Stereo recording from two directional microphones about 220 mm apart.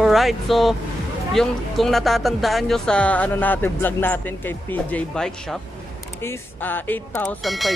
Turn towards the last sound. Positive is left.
turn(degrees=0)  # may be behind; listen again after turning